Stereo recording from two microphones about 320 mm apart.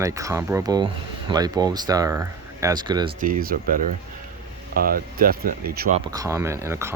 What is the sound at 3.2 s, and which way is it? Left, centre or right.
Speech, right.